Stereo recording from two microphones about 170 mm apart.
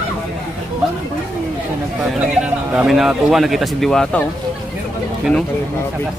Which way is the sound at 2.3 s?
5° right (ahead or behind).